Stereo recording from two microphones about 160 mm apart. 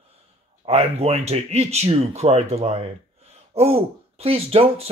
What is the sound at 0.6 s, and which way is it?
Speech, 40° right (ahead or behind).